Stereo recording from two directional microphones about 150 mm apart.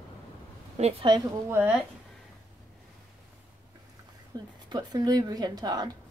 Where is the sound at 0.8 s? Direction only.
40° right (ahead or behind).